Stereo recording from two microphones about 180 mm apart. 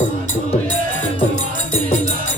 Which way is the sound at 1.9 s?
40° left (ahead or behind).